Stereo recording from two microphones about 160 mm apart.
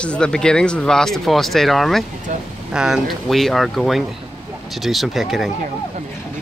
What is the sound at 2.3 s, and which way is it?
Speech, 50° right (ahead or behind).